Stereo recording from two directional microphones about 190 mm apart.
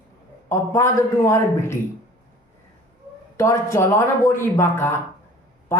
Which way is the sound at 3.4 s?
15° left (ahead or behind).